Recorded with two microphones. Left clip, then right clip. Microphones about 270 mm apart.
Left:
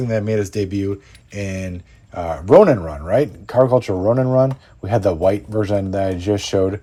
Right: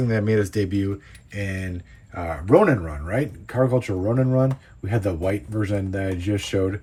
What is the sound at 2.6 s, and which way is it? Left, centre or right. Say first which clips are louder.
Speech: left 6 dB; left.